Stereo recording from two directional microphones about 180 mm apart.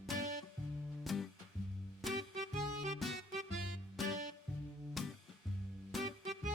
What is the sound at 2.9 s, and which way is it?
Music, centre (ahead or behind).